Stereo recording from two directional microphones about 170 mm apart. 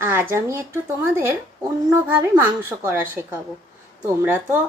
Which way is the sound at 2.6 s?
15° right (ahead or behind).